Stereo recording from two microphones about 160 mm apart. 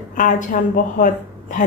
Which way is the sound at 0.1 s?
55° left (ahead or behind).